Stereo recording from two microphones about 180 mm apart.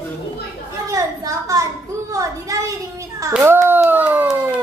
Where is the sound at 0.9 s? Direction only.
20° right (ahead or behind).